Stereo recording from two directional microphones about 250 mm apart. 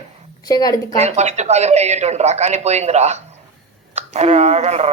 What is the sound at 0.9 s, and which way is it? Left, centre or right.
Speech, right.